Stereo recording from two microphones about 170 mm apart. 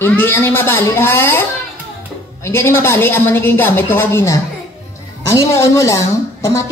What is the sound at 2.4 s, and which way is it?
Speech, 15° left (ahead or behind).